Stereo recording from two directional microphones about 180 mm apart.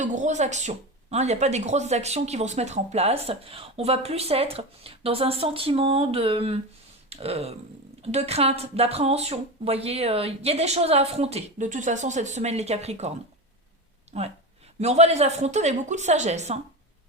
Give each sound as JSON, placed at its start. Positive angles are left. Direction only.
{"t": 0.0, "sound": "speech", "side_deg": -40}
{"t": 14.1, "sound": "a sound", "side_deg": -35}
{"t": 14.8, "sound": "speech", "side_deg": -35}